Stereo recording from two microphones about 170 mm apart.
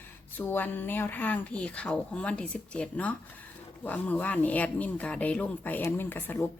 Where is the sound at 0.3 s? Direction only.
10° left (ahead or behind).